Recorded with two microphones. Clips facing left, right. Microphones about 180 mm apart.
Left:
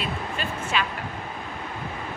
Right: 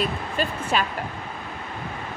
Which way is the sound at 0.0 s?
40° right (ahead or behind).